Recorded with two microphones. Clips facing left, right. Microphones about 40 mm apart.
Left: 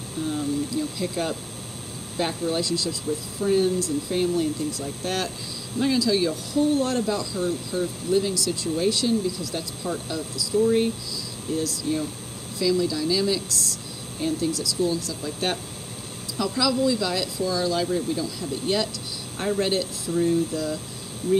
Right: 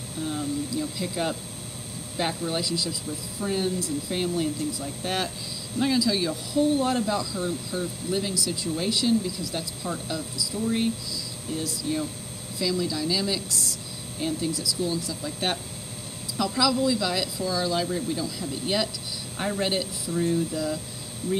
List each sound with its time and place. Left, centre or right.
0.2 s speech: centre
9.8 s speech: centre
10.5 s speech: centre
11.5 s speech: centre
14.2 s speech: centre
15.2 s speech: centre